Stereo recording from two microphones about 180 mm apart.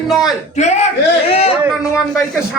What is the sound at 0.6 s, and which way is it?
Speech, 40° left (ahead or behind).